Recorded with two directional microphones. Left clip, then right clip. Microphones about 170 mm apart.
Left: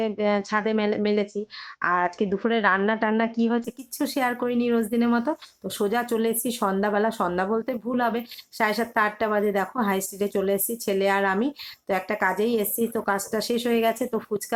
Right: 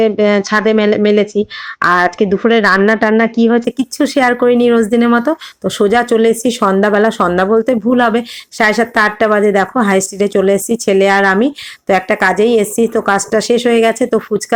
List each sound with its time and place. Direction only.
0.0 s speech: 15° right (ahead or behind)
2.5 s speech: 15° right (ahead or behind)